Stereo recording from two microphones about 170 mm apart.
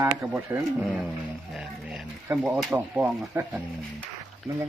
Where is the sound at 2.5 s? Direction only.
10° right (ahead or behind).